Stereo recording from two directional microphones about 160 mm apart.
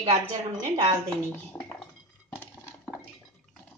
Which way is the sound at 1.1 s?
10° left (ahead or behind).